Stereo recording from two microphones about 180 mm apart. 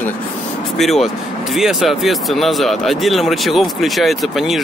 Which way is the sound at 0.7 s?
Centre (ahead or behind).